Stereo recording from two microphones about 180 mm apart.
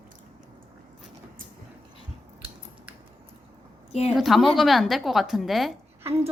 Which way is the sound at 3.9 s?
35° left (ahead or behind).